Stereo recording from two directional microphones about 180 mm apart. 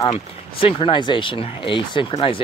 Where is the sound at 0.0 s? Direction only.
25° left (ahead or behind).